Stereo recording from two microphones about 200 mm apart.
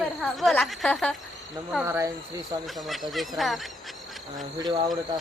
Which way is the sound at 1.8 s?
15° right (ahead or behind).